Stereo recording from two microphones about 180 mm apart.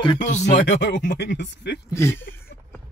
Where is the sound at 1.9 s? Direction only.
15° left (ahead or behind).